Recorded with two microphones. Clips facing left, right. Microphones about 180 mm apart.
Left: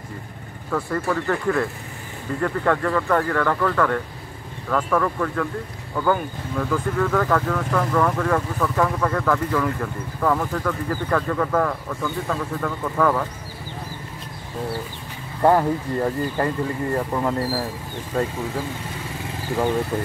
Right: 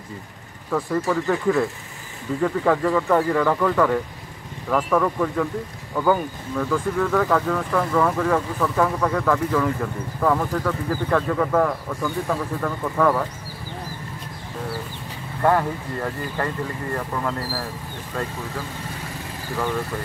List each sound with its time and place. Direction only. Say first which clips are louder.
0.7 s speech: right 1 dB; 5° right (ahead or behind)
15.4 s speech: left 3 dB; 25° left (ahead or behind)